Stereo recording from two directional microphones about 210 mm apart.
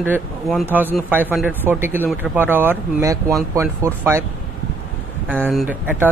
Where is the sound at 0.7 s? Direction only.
10° right (ahead or behind).